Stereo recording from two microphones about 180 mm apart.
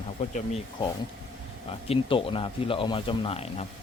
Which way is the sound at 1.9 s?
30° left (ahead or behind).